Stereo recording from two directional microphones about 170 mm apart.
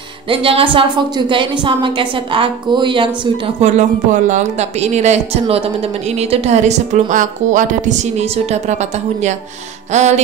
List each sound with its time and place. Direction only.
0.3 s a woman's voice: 30° right (ahead or behind)
3.6 s a woman's voice: 45° right (ahead or behind)
9.9 s speech: 40° right (ahead or behind)